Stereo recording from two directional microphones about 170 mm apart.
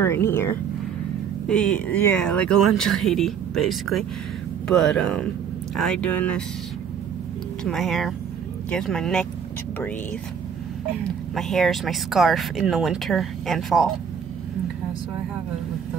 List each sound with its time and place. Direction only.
0.0 s speech: 15° left (ahead or behind)
1.5 s speech: 5° left (ahead or behind)
7.6 s speech: centre (ahead or behind)
11.1 s speech: centre (ahead or behind)